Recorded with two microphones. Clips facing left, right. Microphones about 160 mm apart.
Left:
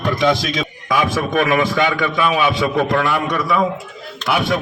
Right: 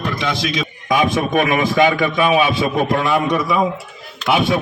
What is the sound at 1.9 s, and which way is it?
Speech, 35° right (ahead or behind).